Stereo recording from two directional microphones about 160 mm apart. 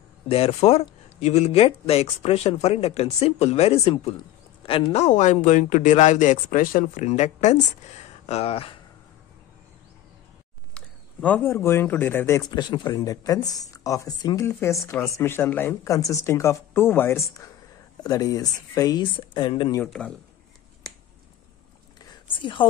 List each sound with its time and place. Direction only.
0.3 s speech: 35° left (ahead or behind)
10.7 s speech: 10° left (ahead or behind); by 19.8 s 30° left (ahead or behind)
19.8 s speech: 5° left (ahead or behind)
22.4 s speech: 30° left (ahead or behind)